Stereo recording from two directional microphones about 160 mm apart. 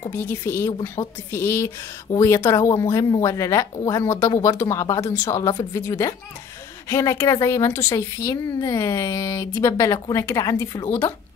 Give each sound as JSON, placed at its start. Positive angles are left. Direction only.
{"t": 0.1, "sound": "a woman's voice", "side_deg": 15}